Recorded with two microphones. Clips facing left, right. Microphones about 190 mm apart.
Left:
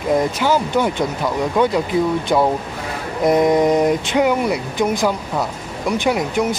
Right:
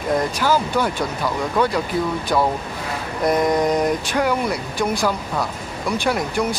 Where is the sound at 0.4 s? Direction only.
20° left (ahead or behind).